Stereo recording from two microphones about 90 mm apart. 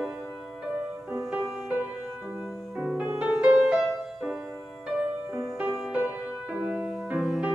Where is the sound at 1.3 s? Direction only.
10° right (ahead or behind).